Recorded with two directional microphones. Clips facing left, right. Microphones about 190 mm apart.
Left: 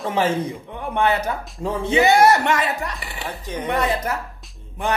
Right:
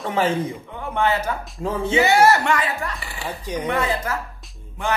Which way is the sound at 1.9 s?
15° left (ahead or behind).